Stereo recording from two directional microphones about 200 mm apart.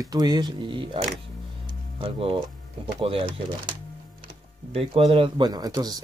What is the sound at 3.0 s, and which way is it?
Speech, 25° right (ahead or behind).